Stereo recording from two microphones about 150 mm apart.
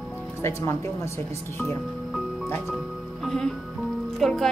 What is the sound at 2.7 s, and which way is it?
Music, centre (ahead or behind).